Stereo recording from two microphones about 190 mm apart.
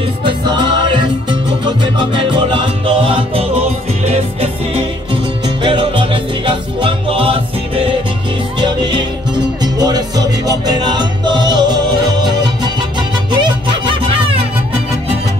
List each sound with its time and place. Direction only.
0.5 s music: 25° right (ahead or behind)